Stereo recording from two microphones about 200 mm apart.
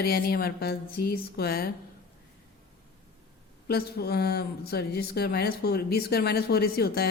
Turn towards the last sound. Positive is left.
turn(degrees=50)  # may be behind; listen again after turning